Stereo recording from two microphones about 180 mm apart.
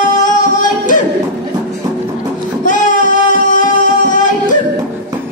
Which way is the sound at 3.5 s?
45° left (ahead or behind).